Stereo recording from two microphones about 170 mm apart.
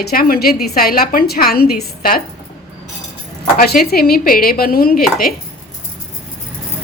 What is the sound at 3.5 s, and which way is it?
Speech, 65° left (ahead or behind).